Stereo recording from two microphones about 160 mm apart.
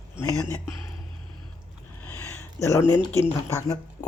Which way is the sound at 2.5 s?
20° left (ahead or behind).